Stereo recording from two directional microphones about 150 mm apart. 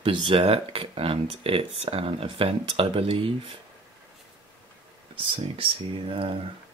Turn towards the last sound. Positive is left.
turn(degrees=-40)  # may be behind; listen again after turning